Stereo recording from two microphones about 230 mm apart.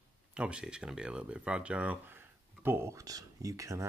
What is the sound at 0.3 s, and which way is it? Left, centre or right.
Speech, centre.